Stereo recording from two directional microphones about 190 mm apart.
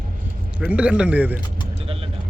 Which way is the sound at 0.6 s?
5° right (ahead or behind).